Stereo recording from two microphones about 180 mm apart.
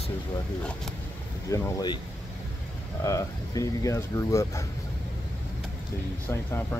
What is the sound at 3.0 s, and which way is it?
Speech, 20° left (ahead or behind).